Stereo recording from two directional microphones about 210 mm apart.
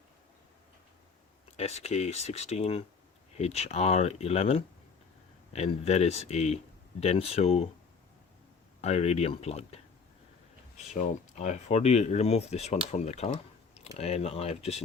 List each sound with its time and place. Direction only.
1.5 s speech: 30° left (ahead or behind)
8.8 s speech: 30° left (ahead or behind)